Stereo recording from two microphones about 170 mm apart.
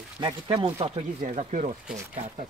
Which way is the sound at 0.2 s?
30° right (ahead or behind).